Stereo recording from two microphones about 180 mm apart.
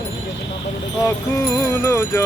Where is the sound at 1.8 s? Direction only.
15° left (ahead or behind).